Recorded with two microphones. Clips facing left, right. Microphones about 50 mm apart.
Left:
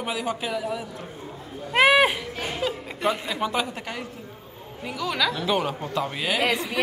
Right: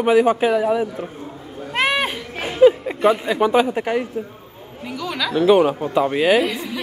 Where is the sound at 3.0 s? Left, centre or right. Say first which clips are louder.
Right 9 dB; centre.